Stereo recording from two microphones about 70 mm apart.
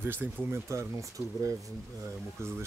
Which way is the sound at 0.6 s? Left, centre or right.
Right.